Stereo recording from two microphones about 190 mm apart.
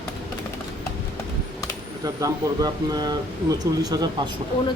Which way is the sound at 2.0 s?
20° right (ahead or behind).